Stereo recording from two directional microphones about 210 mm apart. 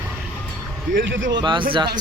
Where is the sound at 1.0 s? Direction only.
60° right (ahead or behind).